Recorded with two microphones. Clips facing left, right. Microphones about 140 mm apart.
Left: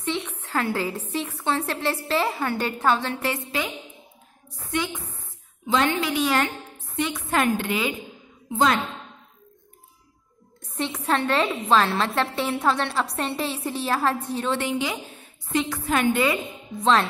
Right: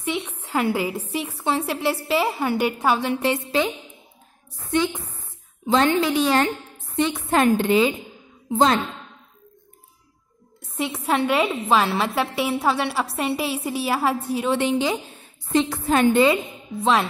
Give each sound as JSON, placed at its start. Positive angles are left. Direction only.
{"t": 0.0, "sound": "a woman's voice", "side_deg": -10}
{"t": 5.7, "sound": "a woman's voice", "side_deg": -35}
{"t": 10.8, "sound": "a woman's voice", "side_deg": -10}
{"t": 14.6, "sound": "a woman's voice", "side_deg": -30}
{"t": 16.8, "sound": "a woman's voice", "side_deg": -5}